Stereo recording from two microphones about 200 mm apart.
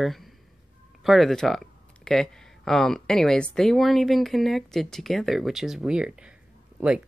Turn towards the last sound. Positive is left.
turn(degrees=-5)  # may be behind; listen again after turning